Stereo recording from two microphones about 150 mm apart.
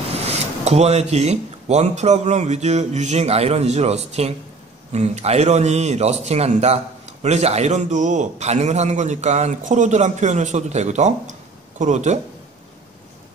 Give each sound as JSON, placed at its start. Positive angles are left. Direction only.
{"t": 0.2, "sound": "speech", "side_deg": -45}